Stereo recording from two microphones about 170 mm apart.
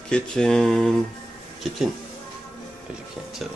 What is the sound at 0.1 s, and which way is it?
Speech, 5° left (ahead or behind).